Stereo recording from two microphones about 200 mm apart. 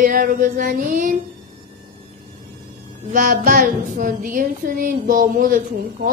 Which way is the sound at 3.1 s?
40° right (ahead or behind).